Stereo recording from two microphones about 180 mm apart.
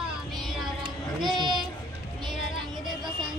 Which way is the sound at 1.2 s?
25° right (ahead or behind).